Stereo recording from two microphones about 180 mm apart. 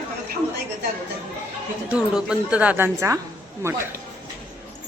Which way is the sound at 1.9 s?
5° right (ahead or behind).